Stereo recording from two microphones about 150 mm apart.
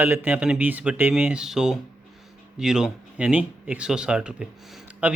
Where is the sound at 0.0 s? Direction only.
10° right (ahead or behind).